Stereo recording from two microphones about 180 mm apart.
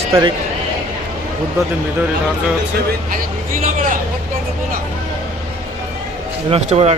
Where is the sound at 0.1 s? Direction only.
20° right (ahead or behind).